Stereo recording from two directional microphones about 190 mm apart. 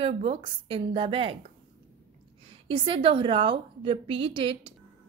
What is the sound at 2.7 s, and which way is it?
A woman's voice, 25° right (ahead or behind).